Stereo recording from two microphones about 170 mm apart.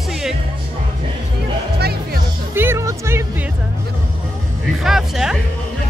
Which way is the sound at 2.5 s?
15° right (ahead or behind).